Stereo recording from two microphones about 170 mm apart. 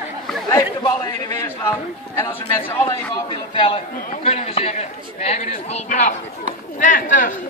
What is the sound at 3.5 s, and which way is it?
A man's voice, 30° left (ahead or behind).